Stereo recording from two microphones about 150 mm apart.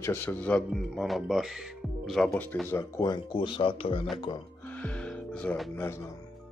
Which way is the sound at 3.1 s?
35° left (ahead or behind).